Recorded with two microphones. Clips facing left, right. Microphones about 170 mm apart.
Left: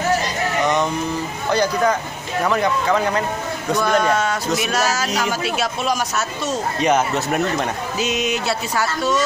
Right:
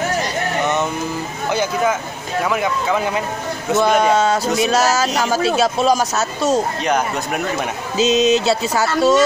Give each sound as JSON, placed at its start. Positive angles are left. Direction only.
{"t": 1.5, "sound": "speech", "side_deg": -5}
{"t": 3.7, "sound": "speech", "side_deg": -25}
{"t": 6.8, "sound": "speech", "side_deg": 5}
{"t": 8.0, "sound": "music", "side_deg": -25}